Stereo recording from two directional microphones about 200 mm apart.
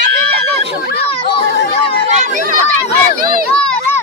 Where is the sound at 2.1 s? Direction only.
35° right (ahead or behind).